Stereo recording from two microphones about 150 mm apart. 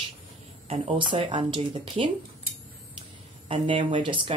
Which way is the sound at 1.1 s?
35° right (ahead or behind).